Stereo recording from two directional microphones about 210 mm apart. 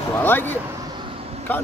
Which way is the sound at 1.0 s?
25° right (ahead or behind).